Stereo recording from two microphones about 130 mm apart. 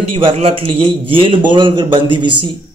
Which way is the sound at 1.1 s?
45° right (ahead or behind).